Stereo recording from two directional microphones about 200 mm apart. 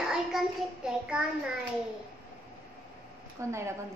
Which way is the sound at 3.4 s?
15° right (ahead or behind).